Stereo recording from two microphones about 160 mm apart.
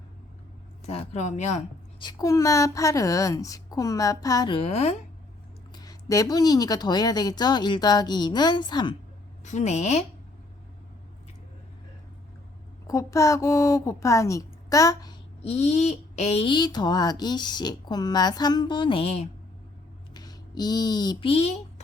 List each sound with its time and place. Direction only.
0.9 s speech: 40° left (ahead or behind)
2.0 s speech: 25° left (ahead or behind); by 4.9 s 40° left (ahead or behind)
5.7 s speech: 25° left (ahead or behind)
9.4 s speech: 45° left (ahead or behind)
12.9 s speech: 20° left (ahead or behind)
15.4 s speech: 40° left (ahead or behind)
20.1 s a woman's voice: 25° left (ahead or behind)